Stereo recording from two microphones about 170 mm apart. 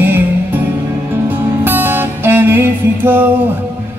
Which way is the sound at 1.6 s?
10° right (ahead or behind).